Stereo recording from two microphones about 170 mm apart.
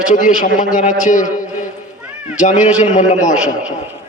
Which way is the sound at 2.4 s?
45° left (ahead or behind).